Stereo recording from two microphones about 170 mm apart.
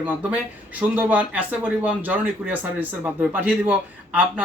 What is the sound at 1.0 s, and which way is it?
Speech, 10° right (ahead or behind).